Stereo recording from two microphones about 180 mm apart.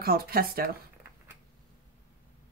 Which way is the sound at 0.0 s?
55° right (ahead or behind).